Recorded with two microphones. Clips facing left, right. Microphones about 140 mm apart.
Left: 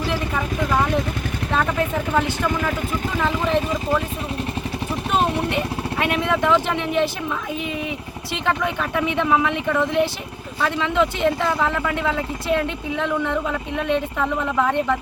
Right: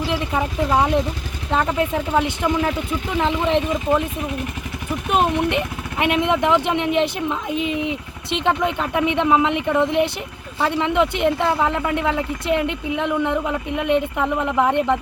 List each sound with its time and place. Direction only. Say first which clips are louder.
0.1 s speech: right 2 dB; 15° right (ahead or behind)
2.1 s speech: right 2 dB; 20° right (ahead or behind)
5.5 s speech: right 1 dB; 20° right (ahead or behind)